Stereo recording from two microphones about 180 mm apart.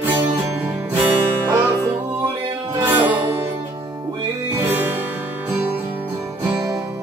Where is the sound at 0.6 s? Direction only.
10° right (ahead or behind).